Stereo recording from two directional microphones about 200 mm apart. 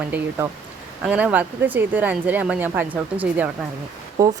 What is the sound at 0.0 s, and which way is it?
A woman's voice, 10° right (ahead or behind).